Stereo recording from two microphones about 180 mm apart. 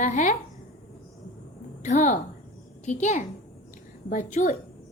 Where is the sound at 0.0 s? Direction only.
40° left (ahead or behind).